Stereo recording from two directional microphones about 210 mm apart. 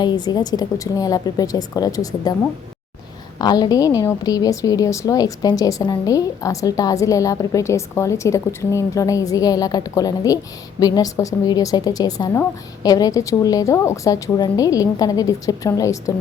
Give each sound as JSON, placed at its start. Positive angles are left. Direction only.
{"t": 0.0, "sound": "a woman's voice", "side_deg": 20}
{"t": 3.3, "sound": "a woman's voice", "side_deg": 20}